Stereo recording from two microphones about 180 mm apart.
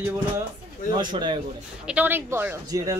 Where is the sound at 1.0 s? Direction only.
25° right (ahead or behind).